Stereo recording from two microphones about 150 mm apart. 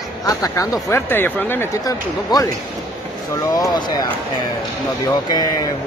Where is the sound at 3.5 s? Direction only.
25° left (ahead or behind).